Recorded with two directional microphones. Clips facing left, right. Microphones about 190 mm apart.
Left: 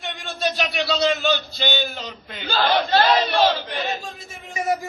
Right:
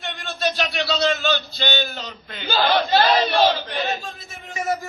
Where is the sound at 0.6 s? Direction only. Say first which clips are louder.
Left 2 dB; 5° left (ahead or behind).